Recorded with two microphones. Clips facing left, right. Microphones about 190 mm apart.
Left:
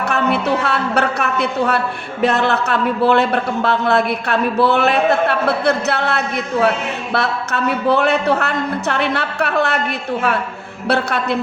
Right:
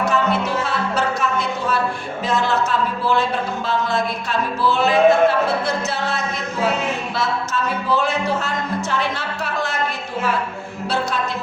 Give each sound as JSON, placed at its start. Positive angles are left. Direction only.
{"t": 0.0, "sound": "music", "side_deg": 65}
{"t": 2.2, "sound": "speech", "side_deg": 65}
{"t": 10.8, "sound": "speech", "side_deg": 65}